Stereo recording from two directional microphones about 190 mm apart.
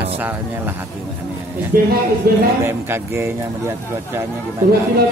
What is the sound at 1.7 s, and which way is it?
Speech, 50° right (ahead or behind).